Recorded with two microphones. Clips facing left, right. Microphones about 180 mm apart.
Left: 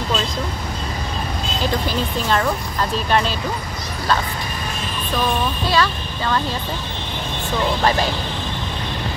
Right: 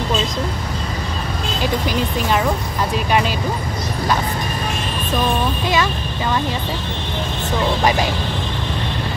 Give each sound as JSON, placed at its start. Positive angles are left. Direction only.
{"t": 5.7, "sound": "a child's voice", "side_deg": -15}